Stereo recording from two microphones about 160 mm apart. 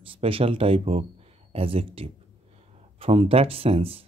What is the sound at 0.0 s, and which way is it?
Speech, 35° right (ahead or behind).